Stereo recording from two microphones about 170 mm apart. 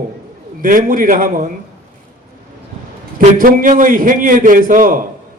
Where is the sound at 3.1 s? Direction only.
55° right (ahead or behind).